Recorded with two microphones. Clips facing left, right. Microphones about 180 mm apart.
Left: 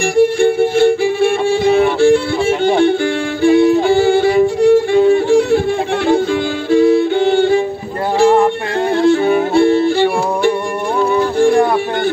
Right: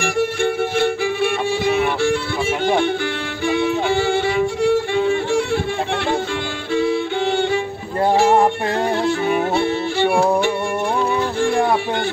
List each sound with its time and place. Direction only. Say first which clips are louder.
0.2 s music: left 9 dB; 35° left (ahead or behind)
3.4 s violin: left 9 dB; 35° left (ahead or behind)
6.7 s music: left 8 dB; 40° left (ahead or behind)
9.2 s music: left 7 dB; 35° left (ahead or behind)